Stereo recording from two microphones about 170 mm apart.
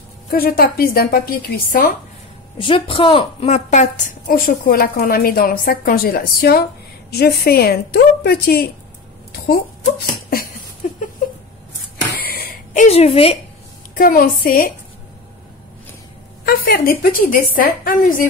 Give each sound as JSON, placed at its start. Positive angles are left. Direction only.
{"t": 0.3, "sound": "a woman's voice", "side_deg": 60}
{"t": 2.6, "sound": "a woman's voice", "side_deg": 30}
{"t": 4.5, "sound": "a woman's voice", "side_deg": 60}
{"t": 10.8, "sound": "a sound", "side_deg": 50}
{"t": 12.2, "sound": "a sound", "side_deg": 60}
{"t": 12.8, "sound": "a woman's voice", "side_deg": 35}
{"t": 13.9, "sound": "a woman's voice", "side_deg": 55}
{"t": 16.4, "sound": "a woman's voice", "side_deg": 60}